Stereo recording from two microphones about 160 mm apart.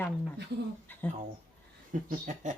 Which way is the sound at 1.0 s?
10° left (ahead or behind).